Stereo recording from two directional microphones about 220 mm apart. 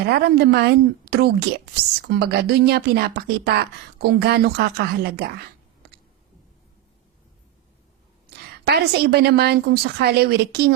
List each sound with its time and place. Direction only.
0.0 s a woman's voice: 45° right (ahead or behind)
8.6 s a woman's voice: 45° right (ahead or behind)